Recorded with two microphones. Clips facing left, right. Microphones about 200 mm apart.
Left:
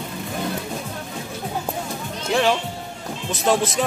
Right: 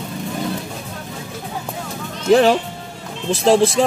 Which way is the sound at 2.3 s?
40° right (ahead or behind).